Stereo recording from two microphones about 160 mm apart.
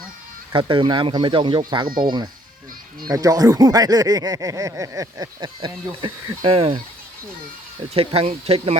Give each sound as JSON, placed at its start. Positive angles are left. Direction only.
{"t": 0.5, "sound": "speech", "side_deg": -30}
{"t": 7.9, "sound": "speech", "side_deg": -40}